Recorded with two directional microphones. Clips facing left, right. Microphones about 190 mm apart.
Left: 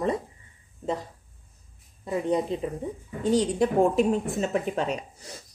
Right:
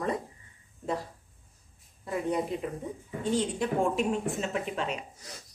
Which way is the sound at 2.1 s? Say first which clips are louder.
Left 4 dB; 25° left (ahead or behind).